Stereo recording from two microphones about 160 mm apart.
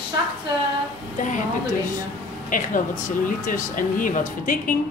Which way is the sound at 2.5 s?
55° left (ahead or behind).